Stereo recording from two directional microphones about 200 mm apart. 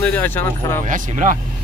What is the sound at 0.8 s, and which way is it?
Speech, 40° right (ahead or behind).